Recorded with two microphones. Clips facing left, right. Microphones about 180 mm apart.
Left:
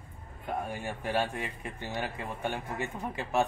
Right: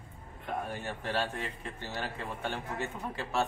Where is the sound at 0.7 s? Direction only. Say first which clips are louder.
Left 2 dB; 10° left (ahead or behind).